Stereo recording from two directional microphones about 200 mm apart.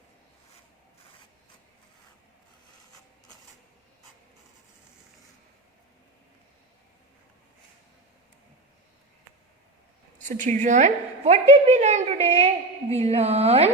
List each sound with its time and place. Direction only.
10.2 s a woman's voice: 40° right (ahead or behind)